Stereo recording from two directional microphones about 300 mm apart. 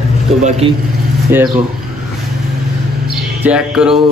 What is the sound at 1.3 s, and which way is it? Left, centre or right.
Speech, centre.